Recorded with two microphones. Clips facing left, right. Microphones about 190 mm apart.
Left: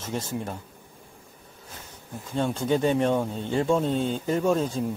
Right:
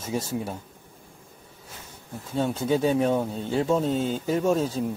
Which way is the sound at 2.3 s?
5° right (ahead or behind).